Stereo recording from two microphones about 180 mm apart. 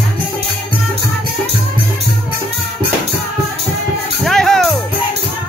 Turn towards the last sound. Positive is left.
turn(degrees=5)  # may be behind; listen again after turning